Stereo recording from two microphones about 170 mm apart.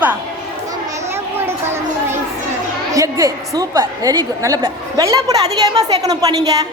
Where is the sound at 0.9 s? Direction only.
15° right (ahead or behind).